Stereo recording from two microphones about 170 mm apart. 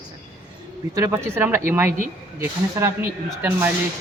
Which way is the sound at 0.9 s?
15° right (ahead or behind).